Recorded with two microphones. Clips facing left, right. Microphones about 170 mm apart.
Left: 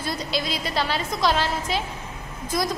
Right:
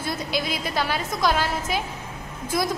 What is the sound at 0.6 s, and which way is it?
A woman's voice, centre (ahead or behind).